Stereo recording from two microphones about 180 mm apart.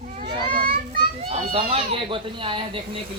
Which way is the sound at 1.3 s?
35° right (ahead or behind).